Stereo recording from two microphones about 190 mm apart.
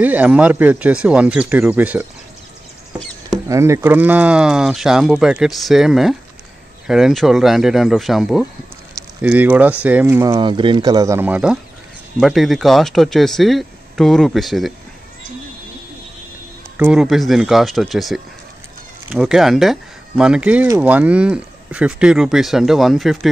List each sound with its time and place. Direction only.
0.0 s speech: 10° right (ahead or behind)
3.3 s speech: 15° right (ahead or behind); by 14.7 s centre (ahead or behind)
16.7 s speech: 5° right (ahead or behind)